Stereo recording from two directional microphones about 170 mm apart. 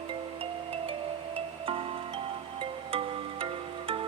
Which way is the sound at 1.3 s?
30° right (ahead or behind).